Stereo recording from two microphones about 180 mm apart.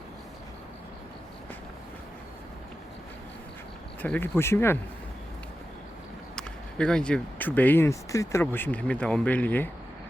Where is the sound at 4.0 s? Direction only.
10° left (ahead or behind).